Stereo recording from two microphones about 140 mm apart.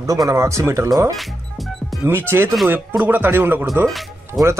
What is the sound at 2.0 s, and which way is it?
Speech, 15° right (ahead or behind).